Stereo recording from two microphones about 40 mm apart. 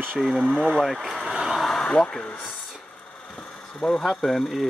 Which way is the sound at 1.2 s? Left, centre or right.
Centre.